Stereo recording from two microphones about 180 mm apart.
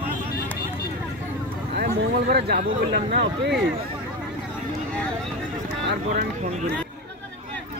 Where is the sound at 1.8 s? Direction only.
60° right (ahead or behind).